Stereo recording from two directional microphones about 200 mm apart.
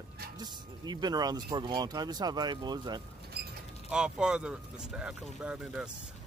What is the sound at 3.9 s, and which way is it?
Speech, 5° right (ahead or behind).